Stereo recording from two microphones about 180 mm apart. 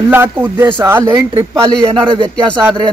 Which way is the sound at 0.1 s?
10° right (ahead or behind).